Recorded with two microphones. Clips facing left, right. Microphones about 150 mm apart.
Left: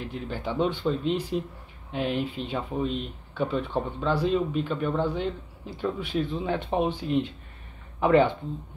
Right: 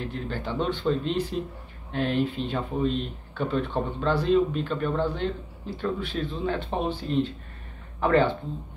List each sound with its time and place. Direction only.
0.0 s speech: 10° left (ahead or behind)